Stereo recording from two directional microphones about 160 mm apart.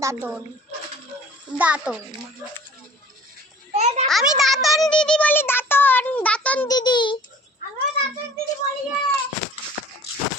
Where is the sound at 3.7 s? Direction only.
45° right (ahead or behind).